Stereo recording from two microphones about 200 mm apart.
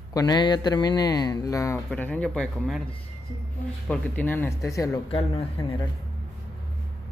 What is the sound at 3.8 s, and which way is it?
Speech, 5° left (ahead or behind).